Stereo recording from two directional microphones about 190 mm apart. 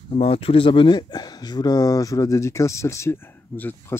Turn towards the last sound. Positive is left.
turn(degrees=10)  # may be behind; listen again after turning